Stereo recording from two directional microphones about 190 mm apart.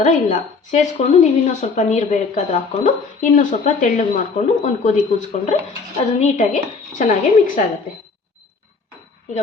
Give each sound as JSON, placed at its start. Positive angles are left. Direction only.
{"t": 0.0, "sound": "a woman's voice", "side_deg": 40}